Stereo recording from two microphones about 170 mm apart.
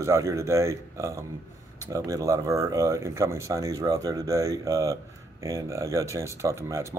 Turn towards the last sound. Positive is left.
turn(degrees=-15)  # may be behind; listen again after turning